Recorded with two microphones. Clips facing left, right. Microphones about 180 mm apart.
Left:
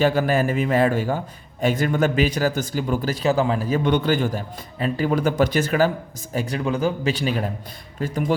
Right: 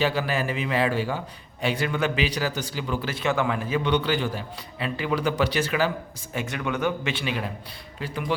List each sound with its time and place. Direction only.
0.0 s a man's voice: 45° left (ahead or behind)
6.3 s a man's voice: 35° left (ahead or behind)